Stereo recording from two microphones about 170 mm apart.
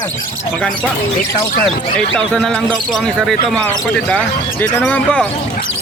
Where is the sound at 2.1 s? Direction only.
5° left (ahead or behind).